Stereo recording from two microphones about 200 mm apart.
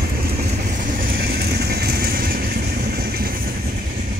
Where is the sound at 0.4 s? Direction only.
45° right (ahead or behind).